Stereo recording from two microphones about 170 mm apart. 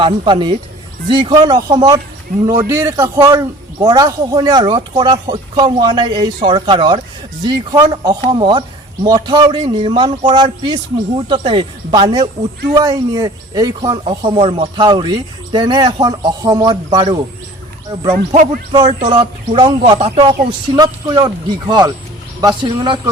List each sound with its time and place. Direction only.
0.0 s a man's voice: 30° right (ahead or behind)
14.1 s a man's voice: 35° right (ahead or behind)
18.7 s a man's voice: 25° right (ahead or behind)